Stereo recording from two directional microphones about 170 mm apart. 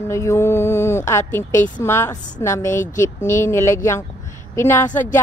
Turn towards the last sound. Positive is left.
turn(degrees=15)  # may be behind; listen again after turning